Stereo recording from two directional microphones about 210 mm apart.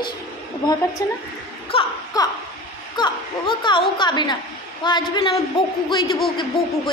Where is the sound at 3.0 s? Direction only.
20° left (ahead or behind).